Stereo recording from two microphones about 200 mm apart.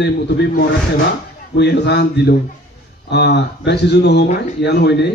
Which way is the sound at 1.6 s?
60° left (ahead or behind).